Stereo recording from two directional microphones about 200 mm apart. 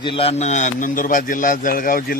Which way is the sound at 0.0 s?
25° left (ahead or behind).